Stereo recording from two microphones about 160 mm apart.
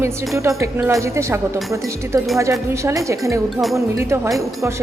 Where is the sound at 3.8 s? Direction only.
20° right (ahead or behind).